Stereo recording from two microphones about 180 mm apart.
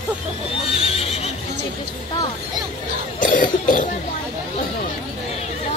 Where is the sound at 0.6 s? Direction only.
35° left (ahead or behind).